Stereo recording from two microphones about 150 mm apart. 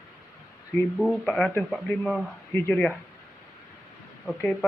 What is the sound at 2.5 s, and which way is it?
Speech, 10° left (ahead or behind).